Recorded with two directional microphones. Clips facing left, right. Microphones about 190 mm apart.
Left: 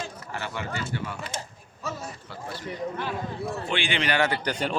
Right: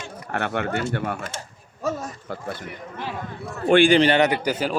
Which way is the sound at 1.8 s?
45° right (ahead or behind).